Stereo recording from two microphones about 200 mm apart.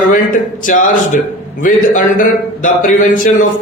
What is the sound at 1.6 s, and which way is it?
A man's voice, 40° left (ahead or behind).